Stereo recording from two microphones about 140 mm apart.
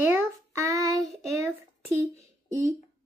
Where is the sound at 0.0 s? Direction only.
20° right (ahead or behind).